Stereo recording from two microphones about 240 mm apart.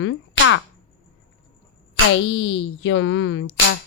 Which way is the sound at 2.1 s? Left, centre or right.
Left.